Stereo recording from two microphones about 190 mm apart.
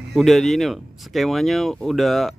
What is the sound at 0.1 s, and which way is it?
Speech, centre (ahead or behind).